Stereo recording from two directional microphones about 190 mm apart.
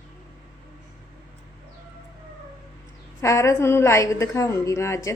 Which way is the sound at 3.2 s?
15° left (ahead or behind).